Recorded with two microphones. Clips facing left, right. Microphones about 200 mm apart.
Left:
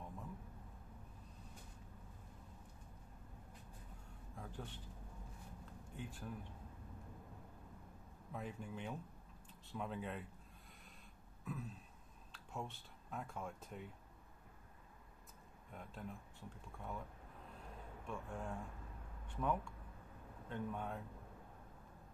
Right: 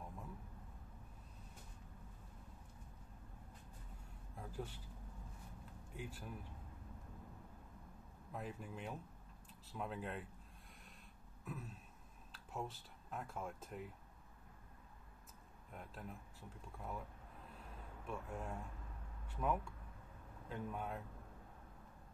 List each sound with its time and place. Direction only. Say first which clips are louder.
4.4 s a sound: right 3 dB; 5° right (ahead or behind)
5.9 s speech: right 1 dB; 5° right (ahead or behind)
8.3 s speech: left 1 dB; centre (ahead or behind)
11.4 s a sound: left 2 dB; centre (ahead or behind)
12.3 s speech: right 1 dB; centre (ahead or behind)
15.7 s speech: left 1 dB; centre (ahead or behind)
18.0 s speech: even; 5° right (ahead or behind)